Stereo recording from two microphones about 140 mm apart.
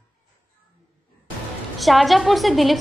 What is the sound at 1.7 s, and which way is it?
A woman's voice, centre (ahead or behind).